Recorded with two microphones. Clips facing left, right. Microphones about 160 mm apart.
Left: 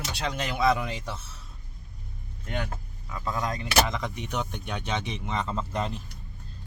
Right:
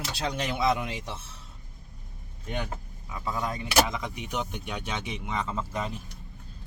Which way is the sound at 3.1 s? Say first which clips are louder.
Left 1 dB; 15° right (ahead or behind).